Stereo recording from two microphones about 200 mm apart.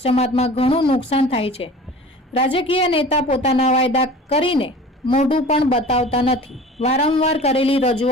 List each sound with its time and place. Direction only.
0.0 s a woman's voice: 30° left (ahead or behind)